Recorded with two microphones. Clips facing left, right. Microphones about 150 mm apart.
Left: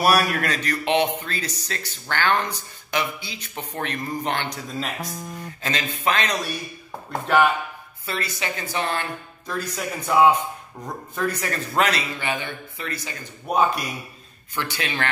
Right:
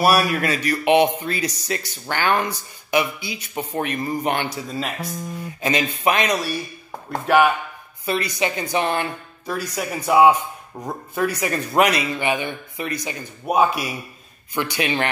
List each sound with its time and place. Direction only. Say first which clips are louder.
0.0 s a man's voice: right 2 dB; centre (ahead or behind)
5.6 s a man's voice: right 6 dB; 15° right (ahead or behind)
8.0 s speech: right 7 dB; 15° right (ahead or behind)